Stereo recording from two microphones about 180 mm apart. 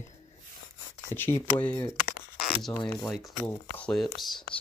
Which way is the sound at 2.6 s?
5° left (ahead or behind).